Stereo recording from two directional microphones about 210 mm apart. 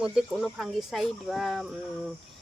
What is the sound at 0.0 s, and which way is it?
Speech, centre (ahead or behind).